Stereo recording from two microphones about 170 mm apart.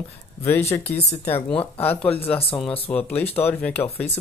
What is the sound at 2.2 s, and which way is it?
Speech, 10° left (ahead or behind).